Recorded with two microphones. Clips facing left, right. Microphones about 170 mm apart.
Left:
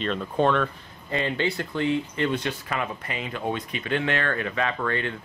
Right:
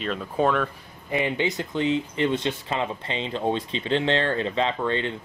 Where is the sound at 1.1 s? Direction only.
15° right (ahead or behind).